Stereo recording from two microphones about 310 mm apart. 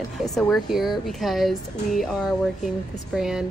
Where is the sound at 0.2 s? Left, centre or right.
Centre.